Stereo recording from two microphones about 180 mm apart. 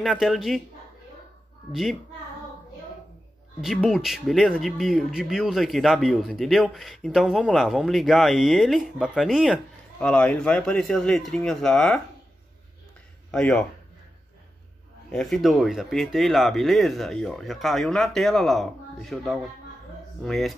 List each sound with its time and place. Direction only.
0.0 s speech: centre (ahead or behind)
1.7 s speech: centre (ahead or behind)
3.6 s speech: centre (ahead or behind)
13.3 s speech: 5° left (ahead or behind)
15.0 s speech: centre (ahead or behind)